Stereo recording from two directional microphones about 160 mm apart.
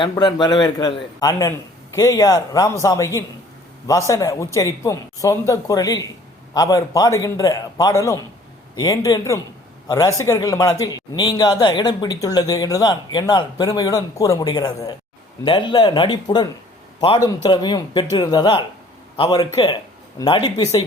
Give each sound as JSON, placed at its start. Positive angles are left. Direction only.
{"t": 0.0, "sound": "a man's voice", "side_deg": 30}